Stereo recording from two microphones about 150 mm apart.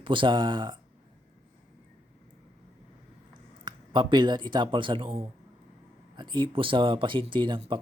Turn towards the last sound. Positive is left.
turn(degrees=-35)  # may be behind; listen again after turning